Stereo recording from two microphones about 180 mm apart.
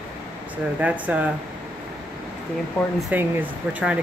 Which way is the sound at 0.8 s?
10° right (ahead or behind).